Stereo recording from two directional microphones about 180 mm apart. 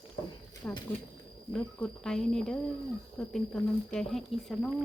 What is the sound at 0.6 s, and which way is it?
Speech, 10° left (ahead or behind).